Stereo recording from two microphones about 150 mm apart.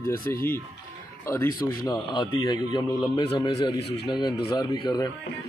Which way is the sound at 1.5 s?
75° left (ahead or behind).